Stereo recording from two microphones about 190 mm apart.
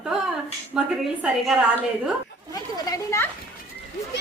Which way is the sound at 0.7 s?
Centre (ahead or behind).